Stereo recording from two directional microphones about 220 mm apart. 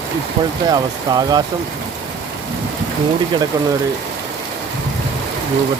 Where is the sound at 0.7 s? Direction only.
20° right (ahead or behind).